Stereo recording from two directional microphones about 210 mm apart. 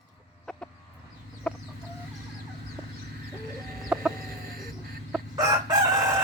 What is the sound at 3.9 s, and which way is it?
Chicken, 5° right (ahead or behind).